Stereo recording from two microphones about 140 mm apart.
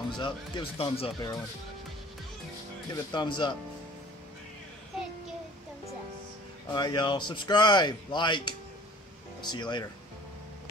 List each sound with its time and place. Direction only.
0.2 s speech: 40° left (ahead or behind)
2.9 s speech: 30° left (ahead or behind)
6.7 s speech: 30° left (ahead or behind)